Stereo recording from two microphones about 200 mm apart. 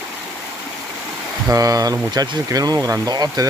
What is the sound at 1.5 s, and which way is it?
Speech, 15° right (ahead or behind).